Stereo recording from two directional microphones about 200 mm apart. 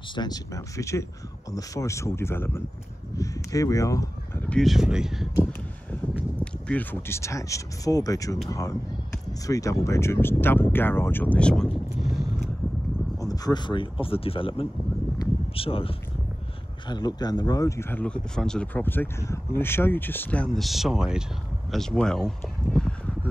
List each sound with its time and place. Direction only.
0.1 s speech: 20° left (ahead or behind)
4.6 s speech: centre (ahead or behind)
6.4 s speech: 10° left (ahead or behind)
13.2 s speech: 20° left (ahead or behind)
15.1 s a sound: 30° left (ahead or behind)
16.8 s speech: 20° left (ahead or behind); by 22.3 s 5° left (ahead or behind)
22.8 s a sound: 5° left (ahead or behind)